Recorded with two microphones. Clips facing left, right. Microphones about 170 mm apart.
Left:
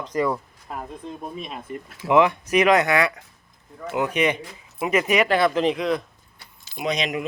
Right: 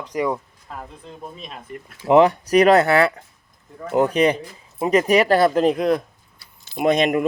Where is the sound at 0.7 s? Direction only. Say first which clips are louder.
Left 2 dB; 20° left (ahead or behind).